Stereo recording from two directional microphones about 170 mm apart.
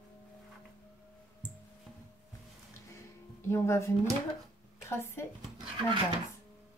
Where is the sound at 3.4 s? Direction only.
15° left (ahead or behind).